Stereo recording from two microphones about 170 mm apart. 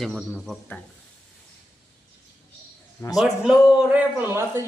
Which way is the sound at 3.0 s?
15° left (ahead or behind).